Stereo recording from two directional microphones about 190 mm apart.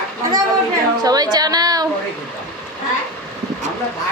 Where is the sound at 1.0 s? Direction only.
20° right (ahead or behind).